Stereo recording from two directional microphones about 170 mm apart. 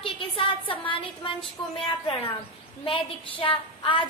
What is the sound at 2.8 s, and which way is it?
A woman's voice, 30° left (ahead or behind).